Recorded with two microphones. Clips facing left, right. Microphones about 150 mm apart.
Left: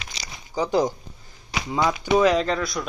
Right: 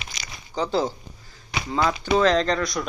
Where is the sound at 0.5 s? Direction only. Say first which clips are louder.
Left 2 dB; 15° left (ahead or behind).